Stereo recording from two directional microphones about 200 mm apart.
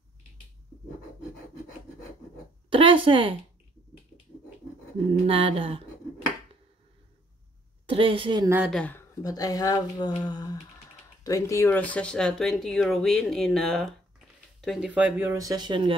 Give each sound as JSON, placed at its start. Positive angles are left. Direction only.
{"t": 2.7, "sound": "a woman's voice", "side_deg": -25}
{"t": 5.2, "sound": "a woman's voice", "side_deg": -25}
{"t": 7.8, "sound": "a woman's voice", "side_deg": -25}
{"t": 8.5, "sound": "speech", "side_deg": -10}
{"t": 8.7, "sound": "speech", "side_deg": 10}